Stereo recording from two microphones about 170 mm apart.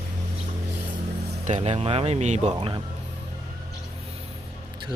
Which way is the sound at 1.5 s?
40° right (ahead or behind).